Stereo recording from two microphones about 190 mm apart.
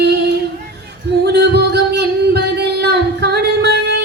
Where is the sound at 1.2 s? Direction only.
60° right (ahead or behind).